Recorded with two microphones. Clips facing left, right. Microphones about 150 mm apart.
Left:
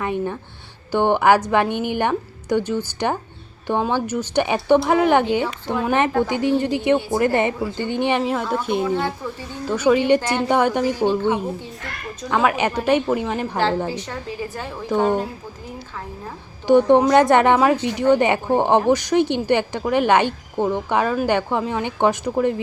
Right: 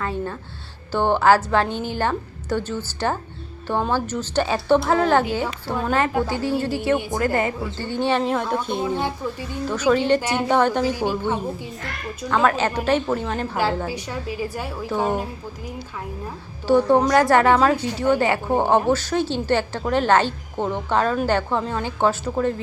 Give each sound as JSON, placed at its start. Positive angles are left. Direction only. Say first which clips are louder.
{"t": 0.0, "sound": "a sound", "louder": "left 3 dB", "side_deg": 15}
{"t": 0.9, "sound": "a woman's voice", "louder": "left 1 dB", "side_deg": 15}
{"t": 8.2, "sound": "a woman's voice", "louder": "even", "side_deg": 5}
{"t": 8.8, "sound": "a woman's voice", "louder": "left 2 dB", "side_deg": -15}
{"t": 9.6, "sound": "a woman's voice", "louder": "left 2 dB", "side_deg": 10}
{"t": 10.2, "sound": "a woman's voice", "louder": "left 1 dB", "side_deg": -10}
{"t": 10.5, "sound": "a woman's voice", "louder": "even", "side_deg": 10}
{"t": 12.3, "sound": "a woman's voice", "louder": "left 1 dB", "side_deg": 10}
{"t": 13.8, "sound": "a woman's voice", "louder": "left 1 dB", "side_deg": -10}
{"t": 16.6, "sound": "a woman's voice", "louder": "left 3 dB", "side_deg": 15}